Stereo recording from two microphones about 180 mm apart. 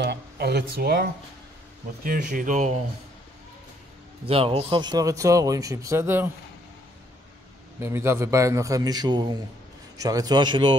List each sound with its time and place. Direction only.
0.0 s speech: 65° right (ahead or behind)
2.0 s speech: 45° right (ahead or behind)
4.3 s speech: 30° right (ahead or behind); by 6.3 s 10° right (ahead or behind)
7.8 s a man's voice: 15° right (ahead or behind)